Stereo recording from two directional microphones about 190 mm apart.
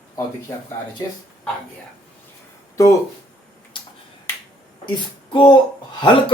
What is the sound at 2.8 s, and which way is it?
Speech, 15° left (ahead or behind).